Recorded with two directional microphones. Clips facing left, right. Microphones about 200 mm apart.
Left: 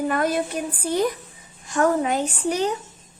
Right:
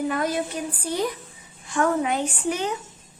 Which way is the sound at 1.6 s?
40° left (ahead or behind).